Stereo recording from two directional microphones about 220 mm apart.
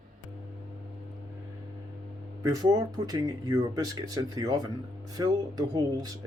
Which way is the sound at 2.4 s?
15° right (ahead or behind).